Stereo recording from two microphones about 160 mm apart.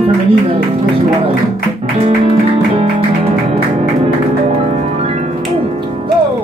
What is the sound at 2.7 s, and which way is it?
Music, 35° right (ahead or behind).